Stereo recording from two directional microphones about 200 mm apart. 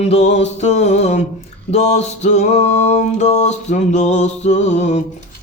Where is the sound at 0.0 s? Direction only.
35° left (ahead or behind).